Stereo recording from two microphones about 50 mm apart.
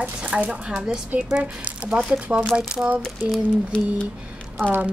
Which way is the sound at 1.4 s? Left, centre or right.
Right.